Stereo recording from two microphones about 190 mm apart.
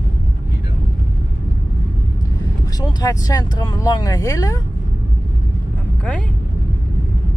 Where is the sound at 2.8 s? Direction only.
20° left (ahead or behind).